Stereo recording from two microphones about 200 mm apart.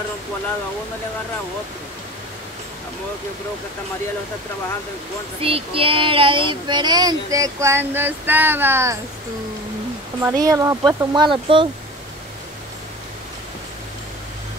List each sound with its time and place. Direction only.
5.4 s speech: 30° right (ahead or behind); by 8.9 s 10° right (ahead or behind)
10.2 s speech: 15° right (ahead or behind)